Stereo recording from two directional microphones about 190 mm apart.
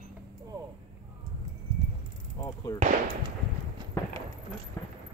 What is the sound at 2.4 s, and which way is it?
Fireworks, 20° left (ahead or behind).